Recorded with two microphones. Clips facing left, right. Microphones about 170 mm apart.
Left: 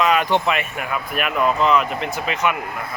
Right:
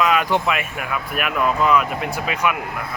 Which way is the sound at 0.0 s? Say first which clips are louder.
Left 1 dB; 5° right (ahead or behind).